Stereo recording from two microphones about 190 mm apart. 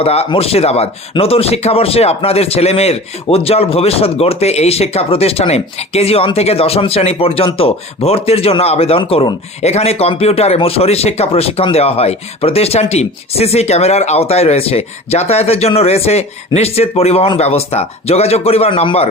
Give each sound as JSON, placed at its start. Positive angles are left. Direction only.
{"t": 0.0, "sound": "speech", "side_deg": 30}